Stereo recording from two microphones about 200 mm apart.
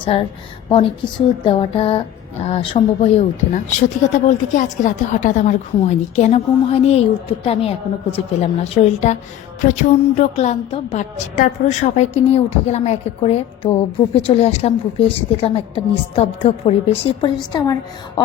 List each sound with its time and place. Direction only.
0.0 s a woman's voice: 25° left (ahead or behind)
1.5 s a woman's voice: 25° left (ahead or behind)